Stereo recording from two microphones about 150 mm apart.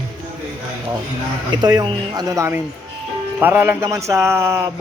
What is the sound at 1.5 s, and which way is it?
Speech, 30° right (ahead or behind).